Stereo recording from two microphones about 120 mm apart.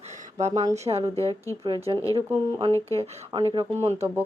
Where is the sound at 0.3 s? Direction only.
70° right (ahead or behind).